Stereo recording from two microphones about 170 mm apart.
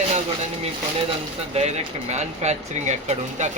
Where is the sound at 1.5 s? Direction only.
40° right (ahead or behind).